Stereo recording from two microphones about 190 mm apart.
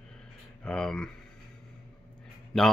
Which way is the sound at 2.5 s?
Centre (ahead or behind).